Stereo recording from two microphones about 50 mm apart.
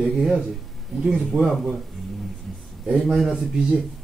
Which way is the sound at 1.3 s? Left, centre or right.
Centre.